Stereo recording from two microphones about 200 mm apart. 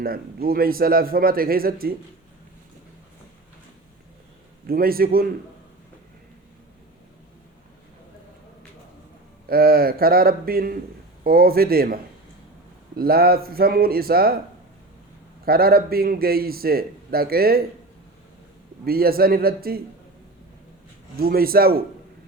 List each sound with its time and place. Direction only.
0.0 s a man's voice: 45° right (ahead or behind)
4.6 s a man's voice: 50° right (ahead or behind)
9.5 s a man's voice: 50° right (ahead or behind)
13.0 s a man's voice: 50° right (ahead or behind)
15.4 s a man's voice: 50° right (ahead or behind)
18.9 s a man's voice: 50° right (ahead or behind)
21.2 s a man's voice: 50° right (ahead or behind)